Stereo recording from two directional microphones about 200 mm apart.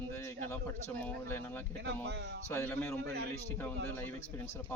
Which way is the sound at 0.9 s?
10° left (ahead or behind).